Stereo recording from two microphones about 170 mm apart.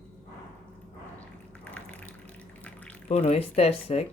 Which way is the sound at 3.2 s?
35° left (ahead or behind).